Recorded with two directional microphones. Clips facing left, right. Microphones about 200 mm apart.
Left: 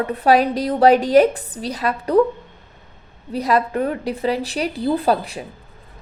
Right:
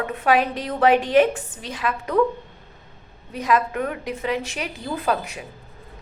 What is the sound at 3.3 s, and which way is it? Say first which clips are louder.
A woman's voice: left 3 dB; 35° left (ahead or behind).